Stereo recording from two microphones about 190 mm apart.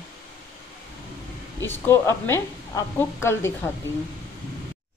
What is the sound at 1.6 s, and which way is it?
A woman's voice, 15° left (ahead or behind).